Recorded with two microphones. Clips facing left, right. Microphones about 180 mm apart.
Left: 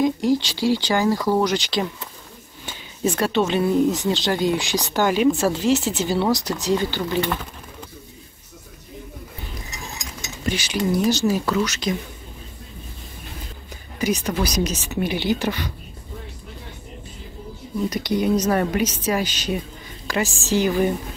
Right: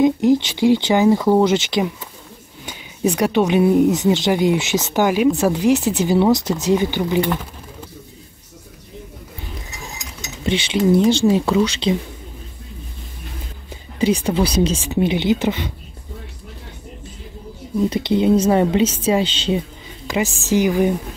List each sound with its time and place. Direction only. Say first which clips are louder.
0.0 s speech: right 5 dB; 20° right (ahead or behind)
10.4 s speech: right 6 dB; 25° right (ahead or behind)
13.9 s speech: right 5 dB; 30° right (ahead or behind)
17.8 s speech: right 5 dB; 25° right (ahead or behind)